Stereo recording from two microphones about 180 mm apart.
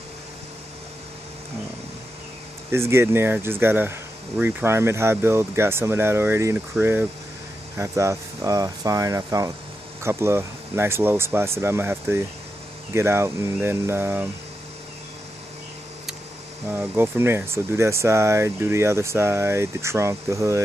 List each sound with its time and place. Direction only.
2.7 s speech: 15° right (ahead or behind)
16.6 s speech: 10° right (ahead or behind)